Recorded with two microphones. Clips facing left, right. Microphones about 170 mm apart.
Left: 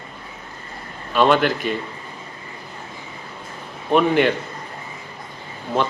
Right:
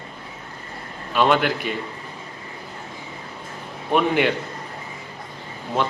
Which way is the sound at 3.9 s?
10° right (ahead or behind).